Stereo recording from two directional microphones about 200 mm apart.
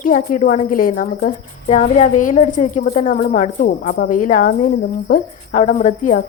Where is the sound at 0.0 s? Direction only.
45° left (ahead or behind).